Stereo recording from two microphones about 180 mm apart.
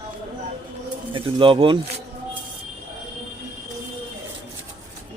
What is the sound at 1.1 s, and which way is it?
Speech, 30° right (ahead or behind).